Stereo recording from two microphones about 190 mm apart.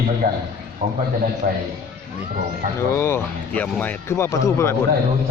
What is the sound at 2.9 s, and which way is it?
Speech, 15° left (ahead or behind).